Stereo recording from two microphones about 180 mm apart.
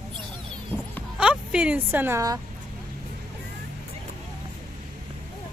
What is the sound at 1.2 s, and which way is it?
Speech, 5° right (ahead or behind).